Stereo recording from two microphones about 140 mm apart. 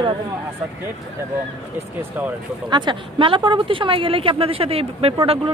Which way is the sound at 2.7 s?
35° right (ahead or behind).